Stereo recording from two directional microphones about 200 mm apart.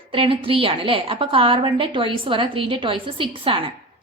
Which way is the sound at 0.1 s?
25° right (ahead or behind).